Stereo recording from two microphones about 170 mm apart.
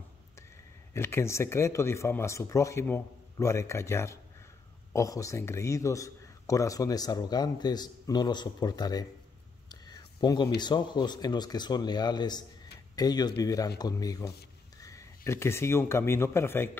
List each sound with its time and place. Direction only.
0.9 s a man's voice: 15° left (ahead or behind)
9.7 s a sound: 25° left (ahead or behind)
10.6 s a man's voice: 25° left (ahead or behind)